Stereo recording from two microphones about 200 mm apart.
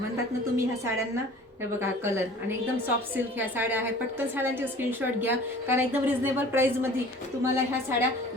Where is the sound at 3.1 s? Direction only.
10° right (ahead or behind).